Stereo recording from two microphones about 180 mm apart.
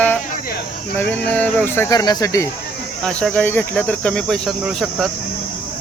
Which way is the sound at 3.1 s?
5° left (ahead or behind).